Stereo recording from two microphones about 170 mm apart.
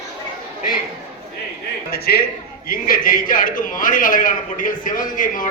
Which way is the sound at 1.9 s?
65° left (ahead or behind).